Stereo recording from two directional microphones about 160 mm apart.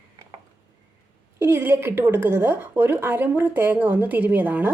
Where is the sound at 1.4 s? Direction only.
15° right (ahead or behind).